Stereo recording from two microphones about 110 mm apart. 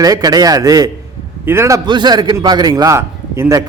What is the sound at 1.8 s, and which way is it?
A man's voice, 40° right (ahead or behind).